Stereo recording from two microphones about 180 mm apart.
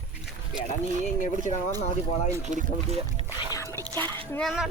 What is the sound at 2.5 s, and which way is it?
Speech, 45° right (ahead or behind).